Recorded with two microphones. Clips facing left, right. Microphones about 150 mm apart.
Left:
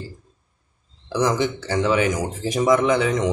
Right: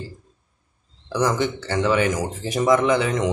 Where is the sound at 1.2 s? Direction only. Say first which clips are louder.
Left 1 dB; 5° left (ahead or behind).